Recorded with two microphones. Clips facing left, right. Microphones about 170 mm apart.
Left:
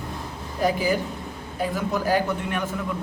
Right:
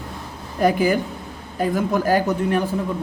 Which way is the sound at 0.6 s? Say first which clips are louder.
Right 5 dB; 55° right (ahead or behind).